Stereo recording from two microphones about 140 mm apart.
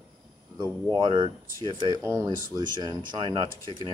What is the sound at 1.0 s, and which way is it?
Speech, 35° right (ahead or behind).